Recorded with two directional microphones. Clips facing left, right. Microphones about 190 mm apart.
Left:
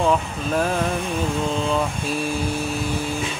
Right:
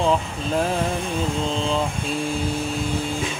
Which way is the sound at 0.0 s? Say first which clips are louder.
Left 1 dB; 25° right (ahead or behind).